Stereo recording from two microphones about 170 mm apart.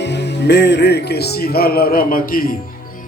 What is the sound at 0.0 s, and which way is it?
Speech, 90° left.